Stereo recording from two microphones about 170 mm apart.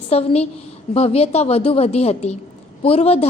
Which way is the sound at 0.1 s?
35° left (ahead or behind).